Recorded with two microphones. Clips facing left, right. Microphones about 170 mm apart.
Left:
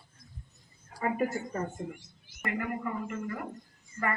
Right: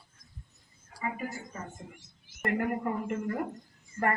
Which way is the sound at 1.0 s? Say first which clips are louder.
Left 6 dB; 55° left (ahead or behind).